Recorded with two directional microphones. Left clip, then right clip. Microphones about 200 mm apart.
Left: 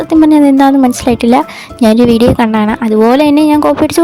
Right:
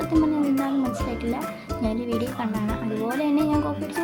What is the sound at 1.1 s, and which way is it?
Speech, 55° left (ahead or behind).